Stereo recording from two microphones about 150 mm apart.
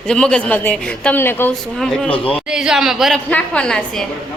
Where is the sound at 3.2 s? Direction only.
10° left (ahead or behind).